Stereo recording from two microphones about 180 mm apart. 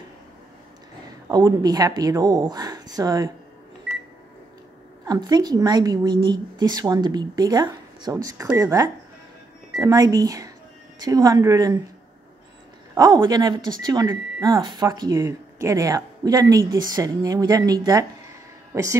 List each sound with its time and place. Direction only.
1.3 s a woman's voice: 20° right (ahead or behind)
5.0 s a woman's voice: 20° right (ahead or behind)
12.9 s a woman's voice: 20° right (ahead or behind)